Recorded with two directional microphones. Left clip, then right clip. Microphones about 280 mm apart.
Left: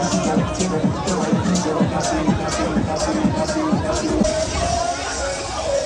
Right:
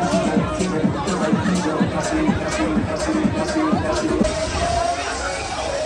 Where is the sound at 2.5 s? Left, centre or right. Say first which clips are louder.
Even; left.